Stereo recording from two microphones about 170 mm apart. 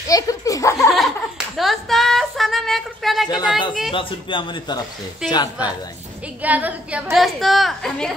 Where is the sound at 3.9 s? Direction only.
30° left (ahead or behind).